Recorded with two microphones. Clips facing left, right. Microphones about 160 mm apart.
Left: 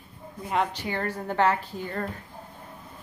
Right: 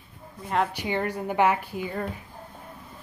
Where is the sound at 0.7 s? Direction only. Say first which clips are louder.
Right 3 dB; 15° right (ahead or behind).